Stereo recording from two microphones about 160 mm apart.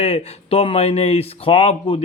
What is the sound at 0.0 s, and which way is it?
Speech, 40° left (ahead or behind).